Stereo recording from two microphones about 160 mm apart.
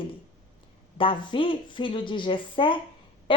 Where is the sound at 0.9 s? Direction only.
35° left (ahead or behind).